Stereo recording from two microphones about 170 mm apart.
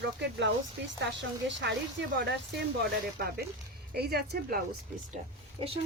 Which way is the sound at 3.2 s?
70° right (ahead or behind).